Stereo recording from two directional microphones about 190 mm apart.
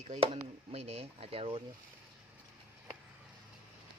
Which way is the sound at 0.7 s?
35° right (ahead or behind).